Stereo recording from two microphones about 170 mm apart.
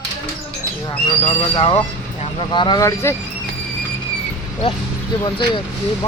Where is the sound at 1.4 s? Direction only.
30° left (ahead or behind).